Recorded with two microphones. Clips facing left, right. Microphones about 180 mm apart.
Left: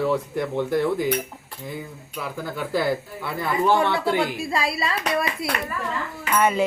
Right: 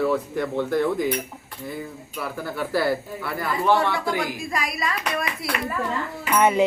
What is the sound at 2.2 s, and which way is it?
Speech, 15° left (ahead or behind).